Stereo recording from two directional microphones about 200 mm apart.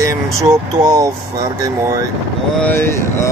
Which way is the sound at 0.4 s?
20° right (ahead or behind).